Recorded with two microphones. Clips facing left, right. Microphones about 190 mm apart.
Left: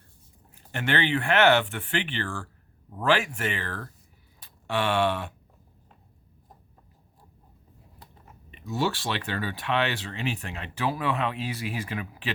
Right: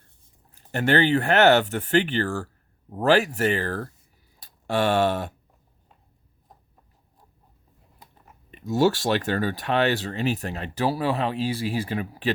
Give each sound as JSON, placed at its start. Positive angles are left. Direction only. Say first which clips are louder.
{"t": 0.7, "sound": "speech", "louder": "right 6 dB", "side_deg": -40}
{"t": 4.4, "sound": "a sound", "louder": "right 4 dB", "side_deg": -40}
{"t": 8.4, "sound": "speech", "louder": "right 7 dB", "side_deg": -45}